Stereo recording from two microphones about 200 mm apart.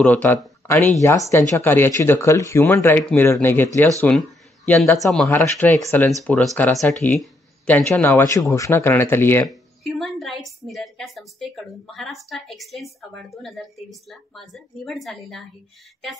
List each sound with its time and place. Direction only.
0.0 s a woman's voice: 10° left (ahead or behind)
5.4 s speech: 15° left (ahead or behind)
6.2 s speech: 5° left (ahead or behind)
9.5 s a woman's voice: centre (ahead or behind)